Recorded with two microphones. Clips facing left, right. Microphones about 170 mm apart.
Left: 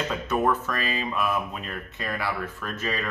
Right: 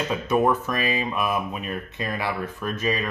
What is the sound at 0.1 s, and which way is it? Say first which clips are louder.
Speech: right 5 dB; 15° right (ahead or behind).